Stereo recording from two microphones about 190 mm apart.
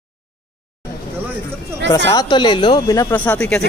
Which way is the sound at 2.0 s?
20° left (ahead or behind).